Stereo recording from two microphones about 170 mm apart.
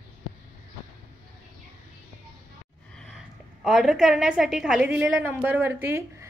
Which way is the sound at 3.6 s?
Centre (ahead or behind).